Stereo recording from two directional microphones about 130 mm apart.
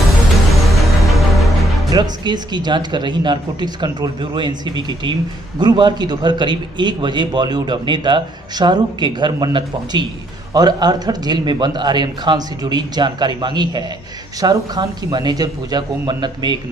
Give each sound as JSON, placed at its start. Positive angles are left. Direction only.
{"t": 0.5, "sound": "music", "side_deg": 0}
{"t": 1.9, "sound": "a man's voice", "side_deg": -35}